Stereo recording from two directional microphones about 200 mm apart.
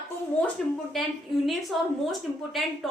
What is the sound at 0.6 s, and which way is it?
A woman's voice, centre (ahead or behind).